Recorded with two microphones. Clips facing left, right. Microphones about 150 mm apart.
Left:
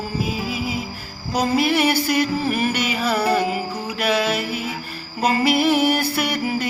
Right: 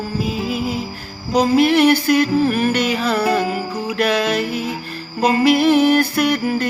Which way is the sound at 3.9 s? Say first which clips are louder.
Right 3 dB; 10° left (ahead or behind).